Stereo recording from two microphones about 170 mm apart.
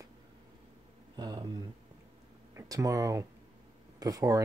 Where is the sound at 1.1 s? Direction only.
25° right (ahead or behind).